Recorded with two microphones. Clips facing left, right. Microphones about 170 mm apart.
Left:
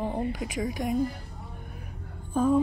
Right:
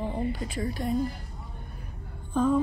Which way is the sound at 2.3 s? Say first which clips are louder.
Left 1 dB; 10° left (ahead or behind).